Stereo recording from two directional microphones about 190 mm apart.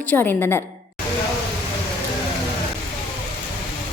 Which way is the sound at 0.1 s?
10° left (ahead or behind).